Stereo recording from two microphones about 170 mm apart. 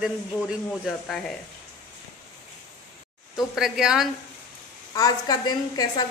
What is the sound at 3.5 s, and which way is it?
Speech, 5° right (ahead or behind).